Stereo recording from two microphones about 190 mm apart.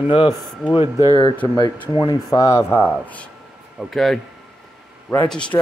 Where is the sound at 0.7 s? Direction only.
30° left (ahead or behind).